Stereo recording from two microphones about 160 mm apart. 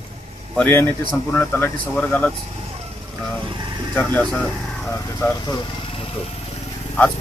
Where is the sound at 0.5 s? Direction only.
10° left (ahead or behind).